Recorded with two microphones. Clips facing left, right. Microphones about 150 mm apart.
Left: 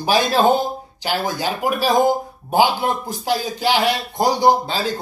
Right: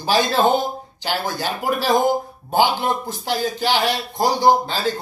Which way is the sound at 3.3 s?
15° left (ahead or behind).